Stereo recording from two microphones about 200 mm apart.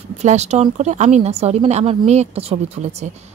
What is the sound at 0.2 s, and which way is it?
Speech, 35° right (ahead or behind).